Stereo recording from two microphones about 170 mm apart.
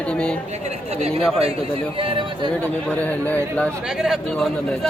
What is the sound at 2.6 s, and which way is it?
Speech, 10° left (ahead or behind).